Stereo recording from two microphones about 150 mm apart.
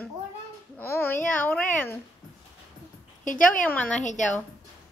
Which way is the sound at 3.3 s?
60° left (ahead or behind).